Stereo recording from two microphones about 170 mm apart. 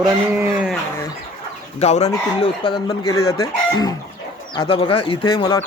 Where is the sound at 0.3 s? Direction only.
5° right (ahead or behind).